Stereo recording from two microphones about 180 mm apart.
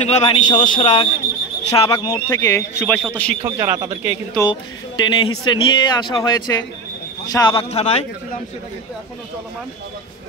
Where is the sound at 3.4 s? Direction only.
15° right (ahead or behind).